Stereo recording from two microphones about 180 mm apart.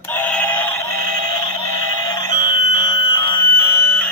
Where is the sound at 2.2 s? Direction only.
20° left (ahead or behind).